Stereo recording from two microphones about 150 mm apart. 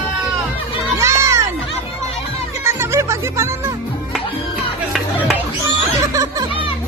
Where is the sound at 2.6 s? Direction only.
20° right (ahead or behind).